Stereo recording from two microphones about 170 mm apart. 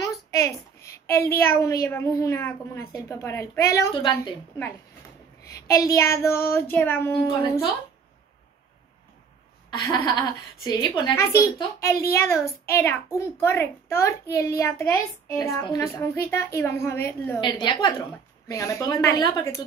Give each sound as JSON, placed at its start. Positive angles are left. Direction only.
{"t": 0.8, "sound": "a sound", "side_deg": 15}
{"t": 1.4, "sound": "a child's voice", "side_deg": 15}
{"t": 5.7, "sound": "a child's voice", "side_deg": 20}
{"t": 9.7, "sound": "a child's voice", "side_deg": 25}
{"t": 17.4, "sound": "a woman's voice", "side_deg": 25}